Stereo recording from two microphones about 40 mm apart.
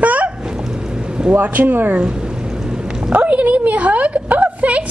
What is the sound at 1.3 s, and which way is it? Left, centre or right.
Speech, right.